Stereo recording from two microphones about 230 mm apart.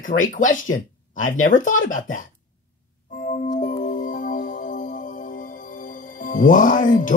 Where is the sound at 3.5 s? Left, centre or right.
Left.